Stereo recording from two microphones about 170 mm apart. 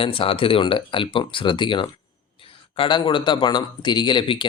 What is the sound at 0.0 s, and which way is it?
A man's voice, 30° left (ahead or behind).